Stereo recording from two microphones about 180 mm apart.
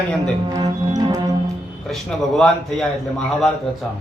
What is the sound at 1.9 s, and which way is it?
Speech, centre (ahead or behind).